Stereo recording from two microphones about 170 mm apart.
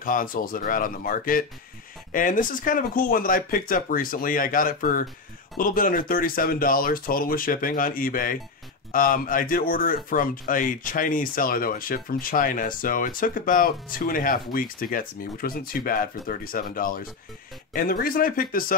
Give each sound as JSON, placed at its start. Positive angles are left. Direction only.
{"t": 0.0, "sound": "speech", "side_deg": 55}